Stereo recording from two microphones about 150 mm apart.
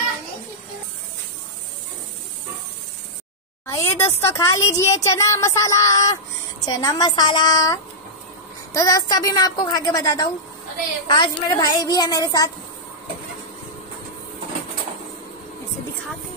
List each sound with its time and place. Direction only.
3.6 s speech: 20° left (ahead or behind)